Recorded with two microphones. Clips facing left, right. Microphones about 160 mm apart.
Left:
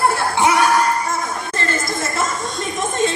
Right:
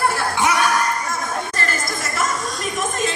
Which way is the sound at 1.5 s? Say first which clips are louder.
Left 3 dB; 25° left (ahead or behind).